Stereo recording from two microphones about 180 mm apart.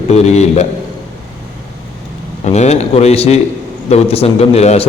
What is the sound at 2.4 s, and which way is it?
A man's voice, 40° left (ahead or behind).